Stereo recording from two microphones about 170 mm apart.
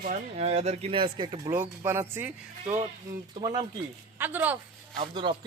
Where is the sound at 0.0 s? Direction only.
45° right (ahead or behind); by 1.4 s 30° right (ahead or behind).